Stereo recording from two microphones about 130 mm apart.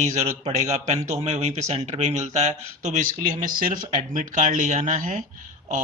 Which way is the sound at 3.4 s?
90° right.